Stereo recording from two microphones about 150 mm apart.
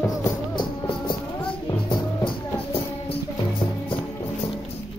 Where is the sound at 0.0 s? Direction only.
20° left (ahead or behind).